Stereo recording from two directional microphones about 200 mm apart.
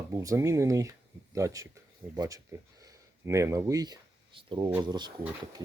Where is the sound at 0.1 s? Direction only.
15° right (ahead or behind).